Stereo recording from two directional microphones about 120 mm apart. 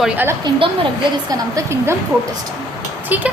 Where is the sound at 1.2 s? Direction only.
25° right (ahead or behind).